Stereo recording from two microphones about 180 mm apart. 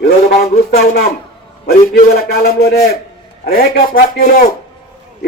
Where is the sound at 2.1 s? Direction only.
60° left (ahead or behind).